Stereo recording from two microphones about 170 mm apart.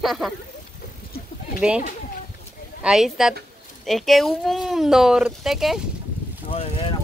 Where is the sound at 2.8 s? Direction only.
5° right (ahead or behind).